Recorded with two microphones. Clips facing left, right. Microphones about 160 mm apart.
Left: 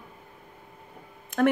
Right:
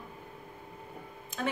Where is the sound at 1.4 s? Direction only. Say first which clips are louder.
Left 12 dB; 60° left (ahead or behind).